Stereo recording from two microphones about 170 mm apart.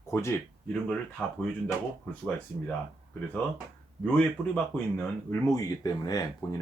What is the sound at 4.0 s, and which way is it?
Speech, 5° left (ahead or behind).